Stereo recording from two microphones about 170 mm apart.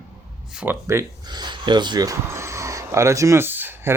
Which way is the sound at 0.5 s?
10° right (ahead or behind).